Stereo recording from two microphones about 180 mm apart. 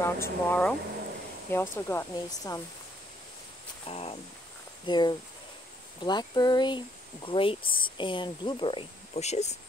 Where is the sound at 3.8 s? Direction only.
35° left (ahead or behind).